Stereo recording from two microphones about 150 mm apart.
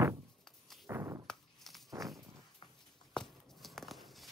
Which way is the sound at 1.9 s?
25° right (ahead or behind).